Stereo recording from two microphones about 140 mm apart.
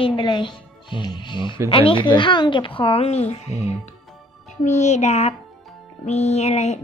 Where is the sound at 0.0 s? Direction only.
35° left (ahead or behind).